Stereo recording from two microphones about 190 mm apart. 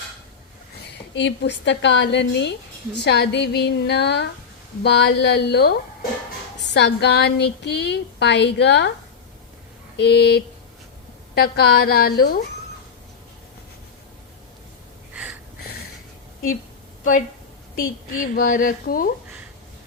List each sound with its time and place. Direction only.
1.1 s a woman's voice: 65° left (ahead or behind)
6.7 s a woman's voice: 60° left (ahead or behind)
10.0 s a woman's voice: 60° left (ahead or behind)
15.1 s a sound: 5° right (ahead or behind)
17.0 s a woman's voice: 45° left (ahead or behind)